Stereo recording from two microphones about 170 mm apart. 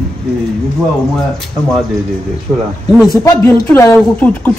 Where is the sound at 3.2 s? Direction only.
20° left (ahead or behind).